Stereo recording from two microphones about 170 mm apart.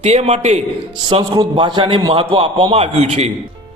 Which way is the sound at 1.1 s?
30° right (ahead or behind).